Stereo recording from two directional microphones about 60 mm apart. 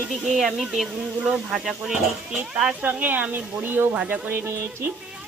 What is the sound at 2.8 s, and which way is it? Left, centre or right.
Speech, right.